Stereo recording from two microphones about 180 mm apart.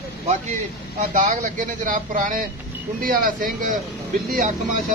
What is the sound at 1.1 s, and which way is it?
Speech, 45° right (ahead or behind).